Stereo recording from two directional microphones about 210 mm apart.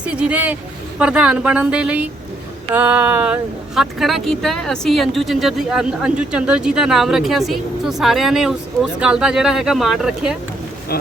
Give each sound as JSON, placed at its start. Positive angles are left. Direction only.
{"t": 0.0, "sound": "speech", "side_deg": -5}
{"t": 2.7, "sound": "a sound", "side_deg": -10}
{"t": 3.8, "sound": "speech", "side_deg": 0}